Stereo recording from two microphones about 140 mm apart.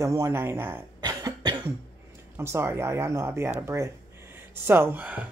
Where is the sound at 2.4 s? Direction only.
20° right (ahead or behind).